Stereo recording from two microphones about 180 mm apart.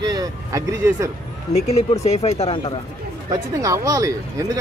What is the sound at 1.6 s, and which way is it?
Speech, 35° left (ahead or behind).